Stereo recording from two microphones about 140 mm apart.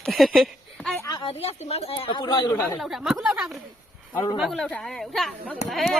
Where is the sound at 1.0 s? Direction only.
25° left (ahead or behind).